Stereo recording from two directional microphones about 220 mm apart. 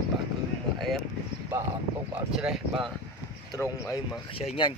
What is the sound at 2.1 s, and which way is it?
Speech, 5° right (ahead or behind).